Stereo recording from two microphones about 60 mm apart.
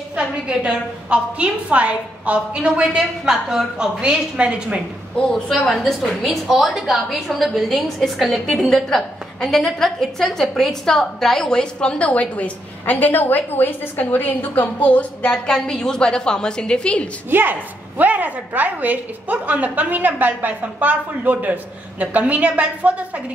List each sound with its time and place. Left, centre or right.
0.1 s a woman's voice: centre
5.1 s a woman's voice: centre
17.3 s a woman's voice: right